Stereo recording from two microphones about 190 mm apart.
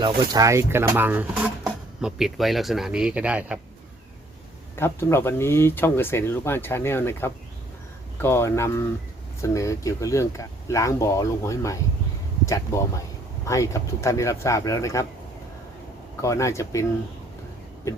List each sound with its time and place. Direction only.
0.0 s speech: 20° right (ahead or behind)
4.8 s speech: 15° left (ahead or behind)
16.2 s speech: 15° left (ahead or behind)
17.9 s speech: 15° left (ahead or behind)